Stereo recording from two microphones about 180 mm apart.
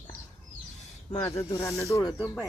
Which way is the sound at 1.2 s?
15° left (ahead or behind).